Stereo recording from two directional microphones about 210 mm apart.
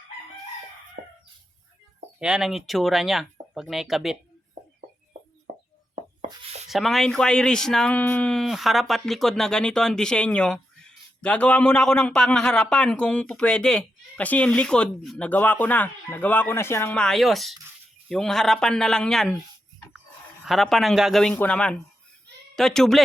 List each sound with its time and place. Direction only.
2.1 s speech: 5° right (ahead or behind)
5.5 s music: 35° right (ahead or behind)
6.7 s speech: centre (ahead or behind)
20.4 s speech: centre (ahead or behind)